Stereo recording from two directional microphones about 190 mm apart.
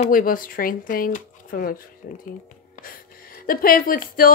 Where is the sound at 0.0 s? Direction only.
45° left (ahead or behind).